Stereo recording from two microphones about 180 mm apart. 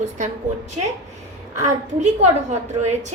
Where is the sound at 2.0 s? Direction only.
40° right (ahead or behind).